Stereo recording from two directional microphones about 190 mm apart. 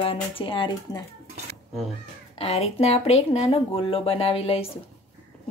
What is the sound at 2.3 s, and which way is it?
Speech, 30° left (ahead or behind).